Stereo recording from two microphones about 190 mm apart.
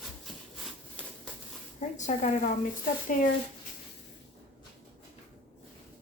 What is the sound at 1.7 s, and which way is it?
Speech, 40° left (ahead or behind).